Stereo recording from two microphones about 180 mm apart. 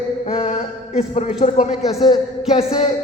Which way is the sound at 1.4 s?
40° left (ahead or behind).